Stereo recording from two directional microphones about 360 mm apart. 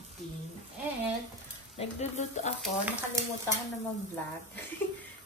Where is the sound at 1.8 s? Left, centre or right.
Centre.